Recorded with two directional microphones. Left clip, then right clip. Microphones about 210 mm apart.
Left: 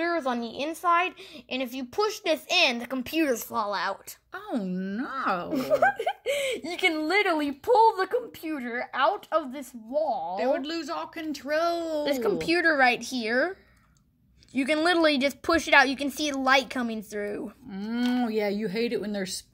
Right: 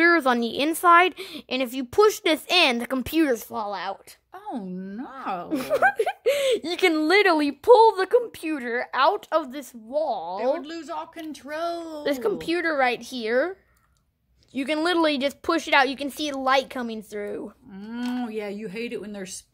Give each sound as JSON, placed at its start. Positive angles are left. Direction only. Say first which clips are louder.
{"t": 0.0, "sound": "a woman's voice", "louder": "right 8 dB", "side_deg": -45}
{"t": 4.3, "sound": "speech", "louder": "left 1 dB", "side_deg": -10}
{"t": 5.5, "sound": "speech", "louder": "right 3 dB", "side_deg": -45}
{"t": 10.3, "sound": "speech", "louder": "right 1 dB", "side_deg": -10}
{"t": 12.0, "sound": "speech", "louder": "right 5 dB", "side_deg": -25}
{"t": 17.6, "sound": "speech", "louder": "left 6 dB", "side_deg": -5}